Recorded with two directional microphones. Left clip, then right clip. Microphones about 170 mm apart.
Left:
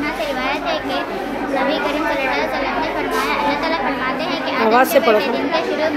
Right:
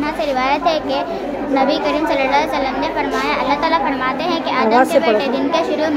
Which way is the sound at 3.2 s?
60° right (ahead or behind).